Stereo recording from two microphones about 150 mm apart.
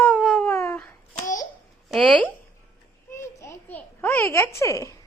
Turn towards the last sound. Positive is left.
turn(degrees=20)  # may be behind; listen again after turning